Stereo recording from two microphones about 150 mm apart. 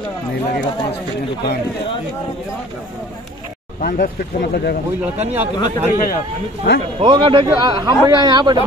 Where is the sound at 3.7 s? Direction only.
80° left.